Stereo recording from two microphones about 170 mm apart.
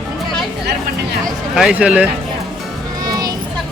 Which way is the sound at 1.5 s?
5° right (ahead or behind).